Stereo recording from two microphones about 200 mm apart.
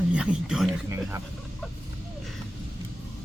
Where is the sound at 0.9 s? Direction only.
15° right (ahead or behind).